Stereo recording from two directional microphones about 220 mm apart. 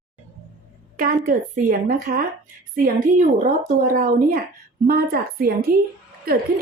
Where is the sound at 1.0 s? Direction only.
40° right (ahead or behind).